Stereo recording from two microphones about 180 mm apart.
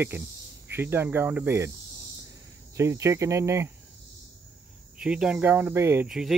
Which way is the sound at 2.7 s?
15° right (ahead or behind).